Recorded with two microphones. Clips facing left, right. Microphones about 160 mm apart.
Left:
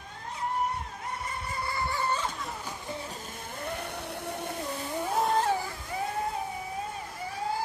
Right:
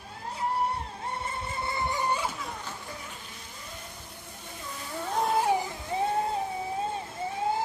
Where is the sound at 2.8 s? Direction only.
30° left (ahead or behind); by 4.6 s 65° left (ahead or behind).